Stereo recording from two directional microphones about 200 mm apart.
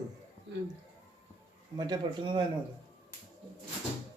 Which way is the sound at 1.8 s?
20° right (ahead or behind).